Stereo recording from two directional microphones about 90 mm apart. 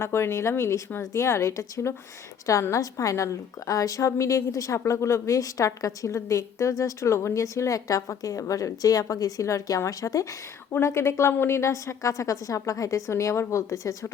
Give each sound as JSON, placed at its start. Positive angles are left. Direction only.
{"t": 0.0, "sound": "a woman's voice", "side_deg": 30}